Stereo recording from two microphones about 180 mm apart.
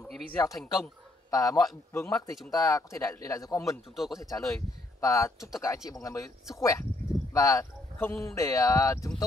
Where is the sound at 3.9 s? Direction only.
Centre (ahead or behind).